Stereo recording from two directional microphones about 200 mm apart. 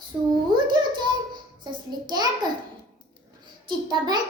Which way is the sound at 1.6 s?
20° right (ahead or behind).